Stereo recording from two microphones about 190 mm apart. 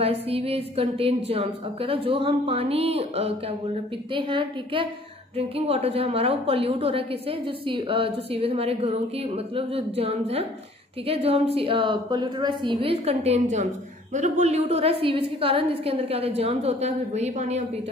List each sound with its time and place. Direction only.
0.0 s a woman's voice: 30° right (ahead or behind)